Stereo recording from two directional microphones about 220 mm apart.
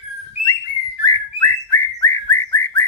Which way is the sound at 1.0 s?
15° left (ahead or behind).